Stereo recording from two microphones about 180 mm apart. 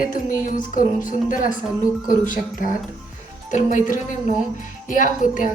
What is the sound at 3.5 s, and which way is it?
A woman's voice, 45° left (ahead or behind).